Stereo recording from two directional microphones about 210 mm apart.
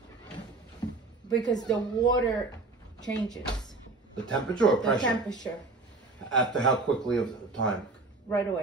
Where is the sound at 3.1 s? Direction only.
5° left (ahead or behind).